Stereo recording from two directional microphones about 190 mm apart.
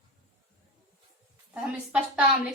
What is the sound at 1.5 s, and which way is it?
Speech, 5° right (ahead or behind).